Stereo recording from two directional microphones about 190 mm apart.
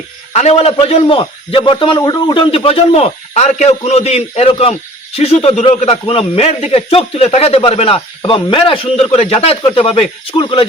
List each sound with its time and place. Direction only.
0.3 s a man's voice: 35° left (ahead or behind)